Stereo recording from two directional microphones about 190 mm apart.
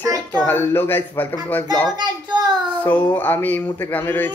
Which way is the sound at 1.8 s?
20° right (ahead or behind).